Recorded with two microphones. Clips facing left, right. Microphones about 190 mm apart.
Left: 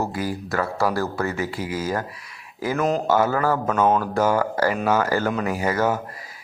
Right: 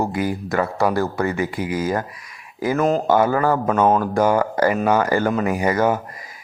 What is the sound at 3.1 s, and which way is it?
Speech, 15° right (ahead or behind).